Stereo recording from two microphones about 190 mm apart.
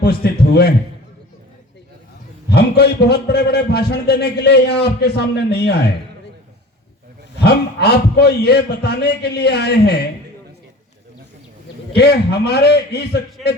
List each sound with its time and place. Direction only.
0.0 s a man's voice: 55° left (ahead or behind)
2.5 s a man's voice: 55° left (ahead or behind)
7.4 s a man's voice: 55° left (ahead or behind)
11.9 s a man's voice: 55° left (ahead or behind)